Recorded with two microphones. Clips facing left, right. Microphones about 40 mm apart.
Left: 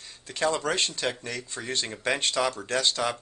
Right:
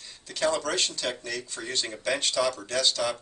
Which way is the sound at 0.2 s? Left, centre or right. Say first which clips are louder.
Even; left.